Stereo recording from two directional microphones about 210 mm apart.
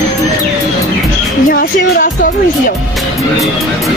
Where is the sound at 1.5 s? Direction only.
40° left (ahead or behind).